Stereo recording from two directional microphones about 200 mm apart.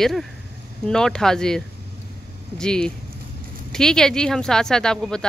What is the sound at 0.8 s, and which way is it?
Speech, 5° left (ahead or behind).